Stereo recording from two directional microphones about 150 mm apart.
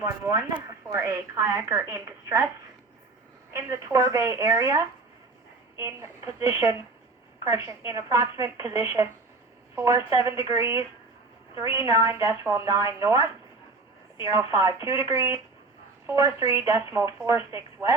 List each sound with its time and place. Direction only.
0.0 s a woman's voice: 20° right (ahead or behind)
3.5 s a woman's voice: 20° right (ahead or behind)